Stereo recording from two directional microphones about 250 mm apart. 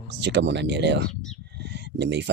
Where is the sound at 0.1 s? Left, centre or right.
Right.